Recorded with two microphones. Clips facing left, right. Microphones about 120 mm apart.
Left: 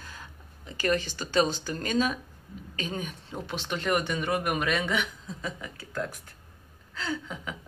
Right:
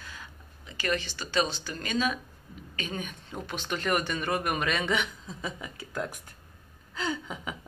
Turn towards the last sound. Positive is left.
turn(degrees=-10)  # may be behind; listen again after turning